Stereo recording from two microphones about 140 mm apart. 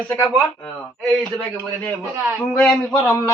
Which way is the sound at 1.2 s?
10° left (ahead or behind).